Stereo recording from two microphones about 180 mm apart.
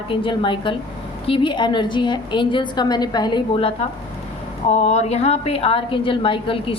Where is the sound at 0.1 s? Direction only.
25° left (ahead or behind).